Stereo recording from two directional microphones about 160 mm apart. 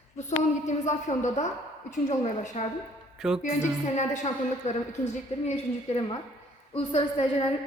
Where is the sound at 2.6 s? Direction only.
45° left (ahead or behind).